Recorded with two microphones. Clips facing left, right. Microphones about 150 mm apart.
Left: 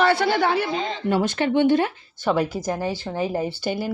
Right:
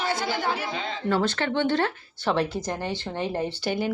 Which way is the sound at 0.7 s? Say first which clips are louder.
Left 6 dB; 40° left (ahead or behind).